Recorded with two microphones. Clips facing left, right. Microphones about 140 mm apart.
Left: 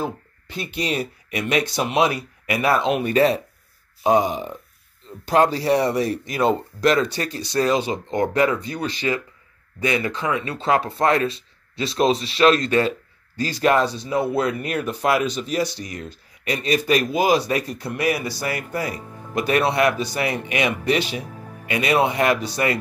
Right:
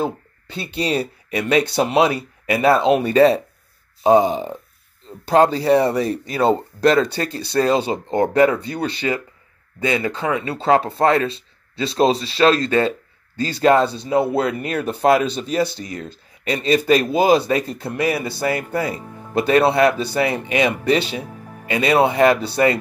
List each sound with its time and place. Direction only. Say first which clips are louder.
0.0 s speech: right 4 dB; 30° right (ahead or behind)